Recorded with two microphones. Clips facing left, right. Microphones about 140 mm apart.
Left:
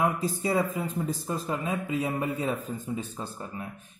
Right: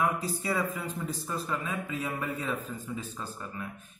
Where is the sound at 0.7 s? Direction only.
30° left (ahead or behind).